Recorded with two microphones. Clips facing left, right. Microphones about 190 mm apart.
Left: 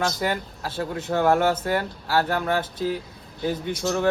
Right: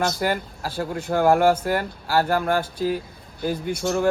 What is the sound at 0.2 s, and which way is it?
Speech, centre (ahead or behind).